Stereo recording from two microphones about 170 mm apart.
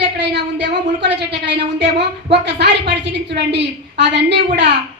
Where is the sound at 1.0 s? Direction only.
85° right.